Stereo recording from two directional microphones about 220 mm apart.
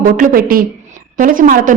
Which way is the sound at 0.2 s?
40° right (ahead or behind).